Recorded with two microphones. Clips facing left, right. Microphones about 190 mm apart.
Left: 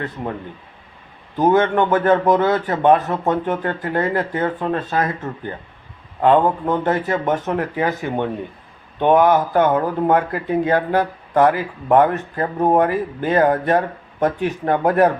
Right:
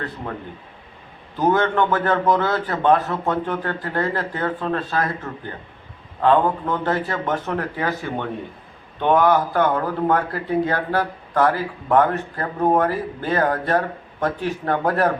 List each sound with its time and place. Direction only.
1.4 s a man's voice: 20° left (ahead or behind)